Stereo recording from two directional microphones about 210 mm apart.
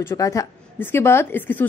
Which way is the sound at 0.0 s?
15° left (ahead or behind).